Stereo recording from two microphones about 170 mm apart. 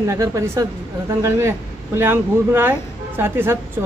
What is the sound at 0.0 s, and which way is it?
Speech, 15° right (ahead or behind).